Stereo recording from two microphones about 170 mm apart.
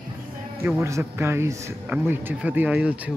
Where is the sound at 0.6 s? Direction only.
15° right (ahead or behind).